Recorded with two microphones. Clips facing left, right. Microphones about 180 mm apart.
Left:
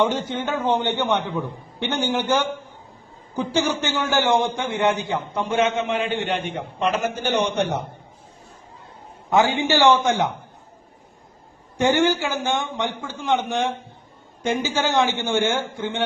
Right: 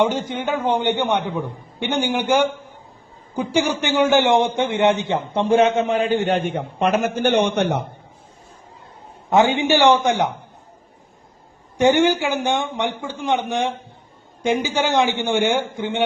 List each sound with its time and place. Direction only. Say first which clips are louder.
0.0 s a man's voice: right 2 dB; 10° right (ahead or behind); by 7.7 s 60° right (ahead or behind)
9.3 s a man's voice: right 3 dB; 20° right (ahead or behind)
11.8 s a man's voice: right 3 dB; 15° right (ahead or behind)